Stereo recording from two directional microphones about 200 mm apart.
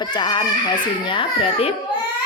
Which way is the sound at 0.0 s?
20° left (ahead or behind).